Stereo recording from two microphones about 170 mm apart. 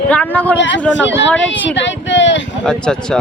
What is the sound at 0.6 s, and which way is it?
Speech, 90° left.